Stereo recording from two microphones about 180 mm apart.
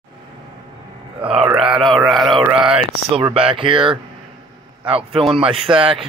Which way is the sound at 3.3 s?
30° right (ahead or behind).